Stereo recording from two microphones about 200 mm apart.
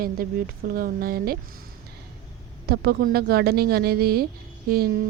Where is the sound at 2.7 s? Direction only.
50° right (ahead or behind).